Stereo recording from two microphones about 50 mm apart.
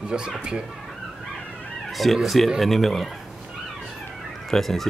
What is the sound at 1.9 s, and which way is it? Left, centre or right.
Cat, centre.